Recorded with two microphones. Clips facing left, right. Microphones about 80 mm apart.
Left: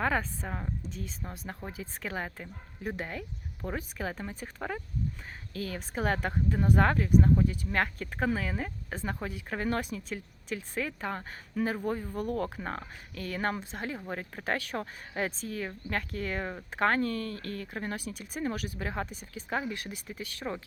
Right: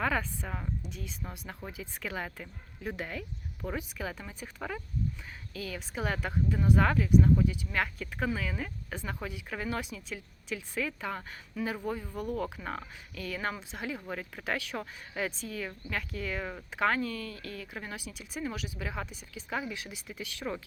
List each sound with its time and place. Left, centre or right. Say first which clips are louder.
0.0 s speech: left 1 dB; left